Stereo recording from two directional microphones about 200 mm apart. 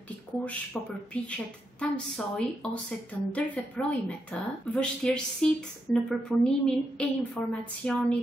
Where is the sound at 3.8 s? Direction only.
5° left (ahead or behind).